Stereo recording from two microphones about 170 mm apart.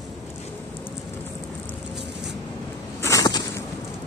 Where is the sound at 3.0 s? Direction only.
20° left (ahead or behind).